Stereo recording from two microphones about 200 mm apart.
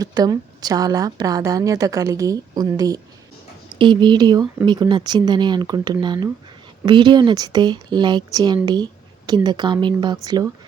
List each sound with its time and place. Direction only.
0.0 s a woman's voice: 20° right (ahead or behind)